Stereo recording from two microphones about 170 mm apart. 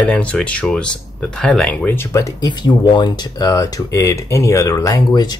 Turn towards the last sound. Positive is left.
turn(degrees=25)  # may be behind; listen again after turning